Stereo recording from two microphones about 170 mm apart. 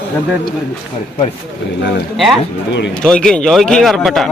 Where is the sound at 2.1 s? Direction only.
Centre (ahead or behind).